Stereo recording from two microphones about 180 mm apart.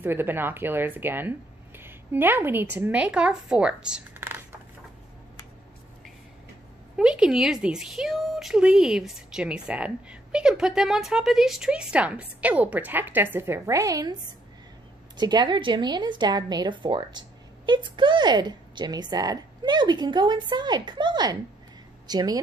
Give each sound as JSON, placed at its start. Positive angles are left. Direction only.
{"t": 0.0, "sound": "a woman's voice", "side_deg": -10}
{"t": 7.0, "sound": "speech", "side_deg": -5}
{"t": 15.1, "sound": "a woman's voice", "side_deg": -25}